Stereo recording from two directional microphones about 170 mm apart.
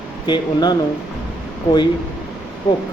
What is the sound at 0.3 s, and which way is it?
Speech, 25° left (ahead or behind).